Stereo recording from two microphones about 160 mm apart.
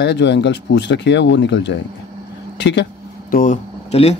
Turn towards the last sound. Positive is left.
turn(degrees=40)  # may be behind; listen again after turning